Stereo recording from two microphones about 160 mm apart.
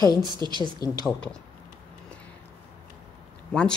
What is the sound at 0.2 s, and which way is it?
Speech, 25° right (ahead or behind).